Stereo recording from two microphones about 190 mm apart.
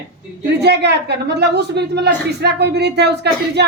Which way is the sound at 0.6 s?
60° right (ahead or behind).